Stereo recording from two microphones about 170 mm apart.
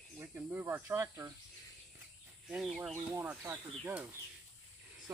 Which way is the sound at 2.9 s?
10° right (ahead or behind).